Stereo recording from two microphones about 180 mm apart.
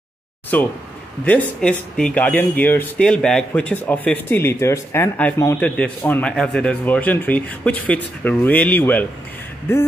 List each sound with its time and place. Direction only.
0.5 s speech: 10° left (ahead or behind)